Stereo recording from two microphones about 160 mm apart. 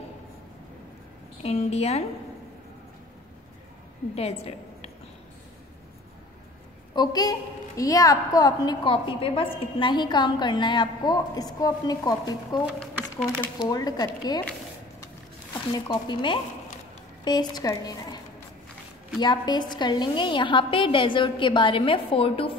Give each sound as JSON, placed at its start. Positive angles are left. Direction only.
{"t": 1.4, "sound": "a woman's voice", "side_deg": 40}
{"t": 4.1, "sound": "a woman's voice", "side_deg": 40}
{"t": 7.0, "sound": "a woman's voice", "side_deg": 25}
{"t": 12.6, "sound": "speech", "side_deg": -10}
{"t": 13.6, "sound": "a woman's voice", "side_deg": 25}
{"t": 15.9, "sound": "a woman's voice", "side_deg": 30}